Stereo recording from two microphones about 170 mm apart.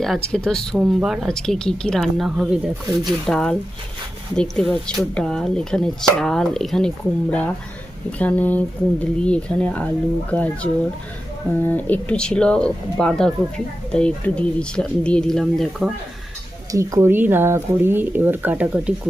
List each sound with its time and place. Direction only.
0.0 s speech: 5° left (ahead or behind)
16.7 s speech: 15° right (ahead or behind)